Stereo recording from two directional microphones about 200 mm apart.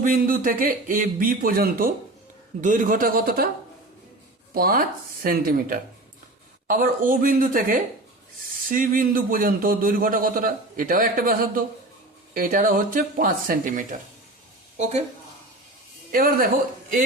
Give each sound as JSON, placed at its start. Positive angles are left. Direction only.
{"t": 0.0, "sound": "a man's voice", "side_deg": -45}
{"t": 4.5, "sound": "a man's voice", "side_deg": -45}
{"t": 16.1, "sound": "a man's voice", "side_deg": -45}